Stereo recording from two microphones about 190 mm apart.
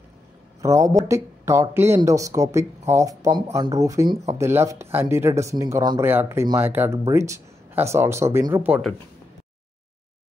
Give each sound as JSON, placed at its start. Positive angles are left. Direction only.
{"t": 0.6, "sound": "speech", "side_deg": -15}